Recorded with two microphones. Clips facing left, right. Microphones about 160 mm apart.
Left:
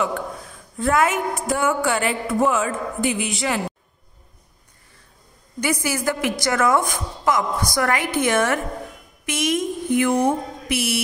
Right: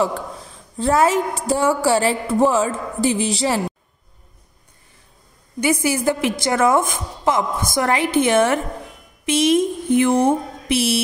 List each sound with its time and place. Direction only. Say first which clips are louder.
0.7 s a woman's voice: right 3 dB; 35° right (ahead or behind)
5.6 s a woman's voice: right 4 dB; 25° right (ahead or behind)